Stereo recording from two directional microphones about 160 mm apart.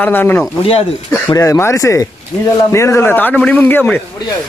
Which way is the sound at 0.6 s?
35° left (ahead or behind).